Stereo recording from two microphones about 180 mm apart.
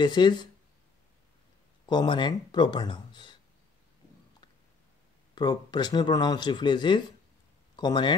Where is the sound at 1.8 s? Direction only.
25° left (ahead or behind).